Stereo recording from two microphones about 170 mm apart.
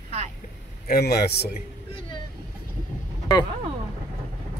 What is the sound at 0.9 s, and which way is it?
Speech, 70° left (ahead or behind).